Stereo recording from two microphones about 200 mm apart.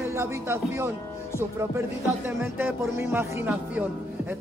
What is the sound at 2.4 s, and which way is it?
Speech, 10° right (ahead or behind).